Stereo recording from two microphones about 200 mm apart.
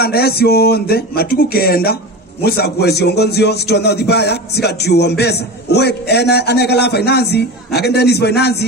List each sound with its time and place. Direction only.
0.0 s speech: 50° left (ahead or behind)